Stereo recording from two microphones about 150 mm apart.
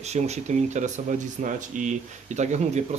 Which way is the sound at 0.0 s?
45° right (ahead or behind).